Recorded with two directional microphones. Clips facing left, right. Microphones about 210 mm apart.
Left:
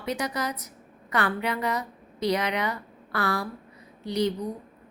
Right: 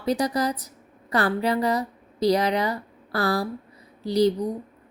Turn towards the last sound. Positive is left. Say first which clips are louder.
# right 6 dB
turn(degrees=-35)  # may be behind; listen again after turning